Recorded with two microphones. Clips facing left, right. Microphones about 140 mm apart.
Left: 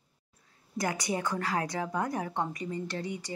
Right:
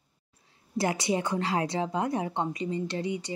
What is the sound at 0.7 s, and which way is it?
A woman's voice, 25° right (ahead or behind).